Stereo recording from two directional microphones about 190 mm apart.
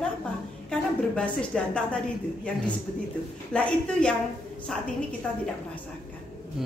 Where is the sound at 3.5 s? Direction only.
5° left (ahead or behind).